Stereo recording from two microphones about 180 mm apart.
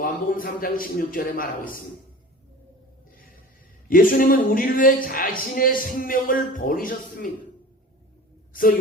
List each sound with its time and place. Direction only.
0.0 s speech: 50° left (ahead or behind)
3.8 s speech: 50° left (ahead or behind)
8.5 s speech: 50° left (ahead or behind)